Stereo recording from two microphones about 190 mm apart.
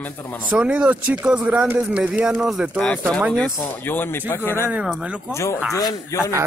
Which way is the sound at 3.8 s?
10° left (ahead or behind).